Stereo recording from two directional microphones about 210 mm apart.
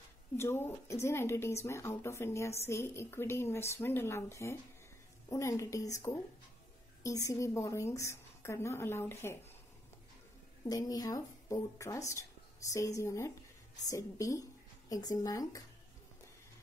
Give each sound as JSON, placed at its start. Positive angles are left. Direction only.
{"t": 0.4, "sound": "a woman's voice", "side_deg": 10}
{"t": 10.6, "sound": "a woman's voice", "side_deg": 15}